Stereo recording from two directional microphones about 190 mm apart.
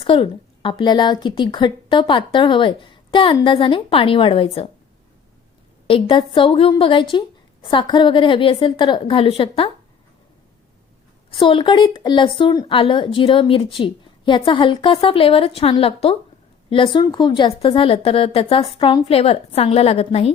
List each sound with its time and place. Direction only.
0.0 s speech: 25° left (ahead or behind)
5.9 s speech: 25° left (ahead or behind)
11.3 s speech: 25° left (ahead or behind)